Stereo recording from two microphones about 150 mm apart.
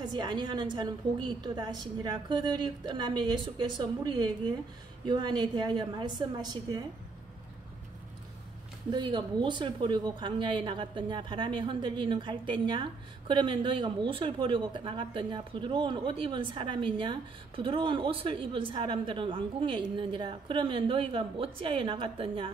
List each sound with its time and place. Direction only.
0.1 s speech: 30° right (ahead or behind)
8.9 s speech: 30° right (ahead or behind)